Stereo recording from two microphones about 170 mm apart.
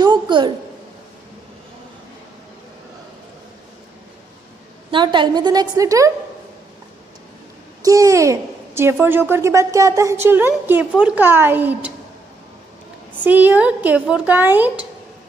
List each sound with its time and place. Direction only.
0.0 s a sound: 25° right (ahead or behind)
4.9 s a woman's voice: 25° right (ahead or behind)
7.8 s a woman's voice: 20° right (ahead or behind)
13.2 s a woman's voice: 10° right (ahead or behind)